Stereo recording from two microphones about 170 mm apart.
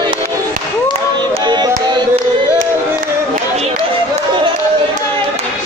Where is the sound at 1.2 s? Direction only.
25° right (ahead or behind).